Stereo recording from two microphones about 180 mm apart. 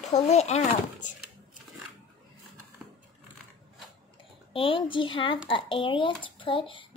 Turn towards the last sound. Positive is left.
turn(degrees=30)  # may be behind; listen again after turning